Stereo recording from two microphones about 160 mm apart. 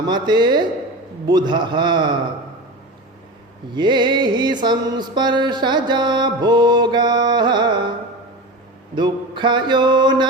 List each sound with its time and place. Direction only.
0.0 s mantra: 25° right (ahead or behind)
3.7 s mantra: 30° right (ahead or behind)
9.0 s mantra: 30° right (ahead or behind)